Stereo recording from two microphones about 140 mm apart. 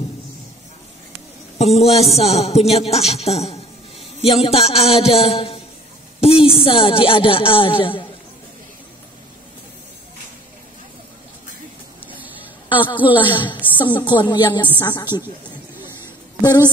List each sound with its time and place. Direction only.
1.6 s a man's voice: 50° left (ahead or behind)
12.6 s a sound: 35° left (ahead or behind)
13.0 s a woman's voice: 35° left (ahead or behind)
16.3 s a woman's voice: 25° left (ahead or behind)